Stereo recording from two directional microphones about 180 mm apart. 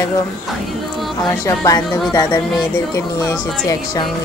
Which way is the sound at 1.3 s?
20° left (ahead or behind).